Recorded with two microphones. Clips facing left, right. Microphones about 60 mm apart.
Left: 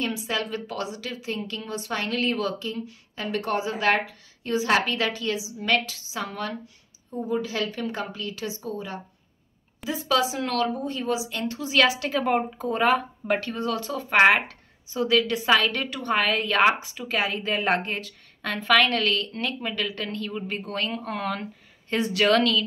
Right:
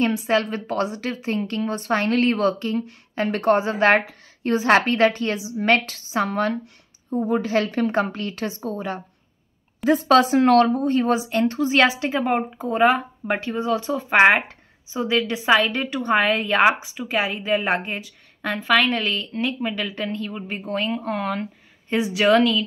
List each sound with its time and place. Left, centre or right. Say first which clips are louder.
0.0 s a woman's voice: right 8 dB; right; by 22.7 s centre